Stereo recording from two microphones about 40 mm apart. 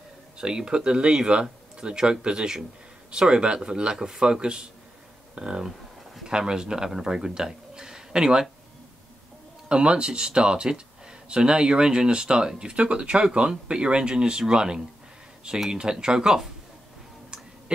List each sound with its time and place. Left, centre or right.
0.4 s speech: centre
9.7 s speech: right
17.7 s a sound: right